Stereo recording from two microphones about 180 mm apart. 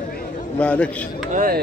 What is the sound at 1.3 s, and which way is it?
Speech, 50° right (ahead or behind).